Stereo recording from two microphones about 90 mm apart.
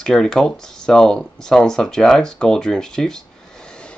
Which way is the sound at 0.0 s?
10° left (ahead or behind).